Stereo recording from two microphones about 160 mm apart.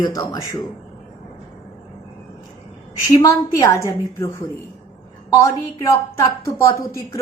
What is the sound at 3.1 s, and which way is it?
A woman's voice, 20° left (ahead or behind).